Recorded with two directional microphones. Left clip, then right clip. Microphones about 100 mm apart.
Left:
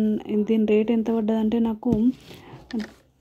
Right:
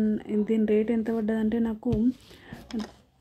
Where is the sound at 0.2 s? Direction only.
25° left (ahead or behind).